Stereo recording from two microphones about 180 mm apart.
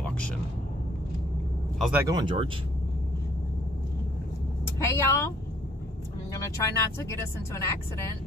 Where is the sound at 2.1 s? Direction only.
25° right (ahead or behind).